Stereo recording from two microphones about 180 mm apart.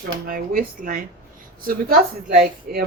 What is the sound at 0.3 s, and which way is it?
Speech, 50° right (ahead or behind).